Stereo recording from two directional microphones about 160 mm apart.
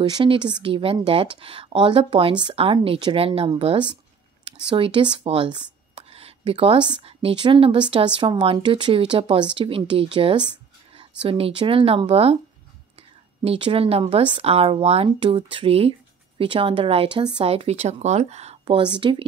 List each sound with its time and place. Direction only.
0.0 s speech: 30° right (ahead or behind)
13.4 s speech: 35° right (ahead or behind)
18.8 s speech: 30° right (ahead or behind)